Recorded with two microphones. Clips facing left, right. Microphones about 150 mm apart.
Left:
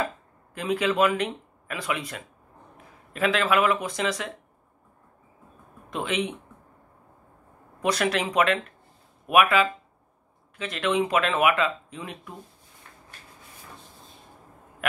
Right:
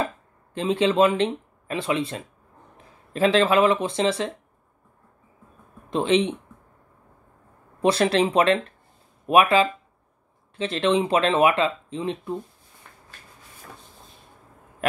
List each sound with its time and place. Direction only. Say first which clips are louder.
0.6 s speech: right 4 dB; 25° right (ahead or behind)
5.9 s speech: right 7 dB; 30° right (ahead or behind)
7.8 s speech: right 5 dB; 30° right (ahead or behind)